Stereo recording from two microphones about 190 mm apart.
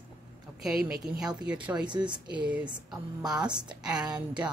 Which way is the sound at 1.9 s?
25° right (ahead or behind).